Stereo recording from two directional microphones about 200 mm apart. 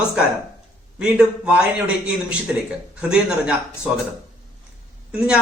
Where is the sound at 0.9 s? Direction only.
5° right (ahead or behind).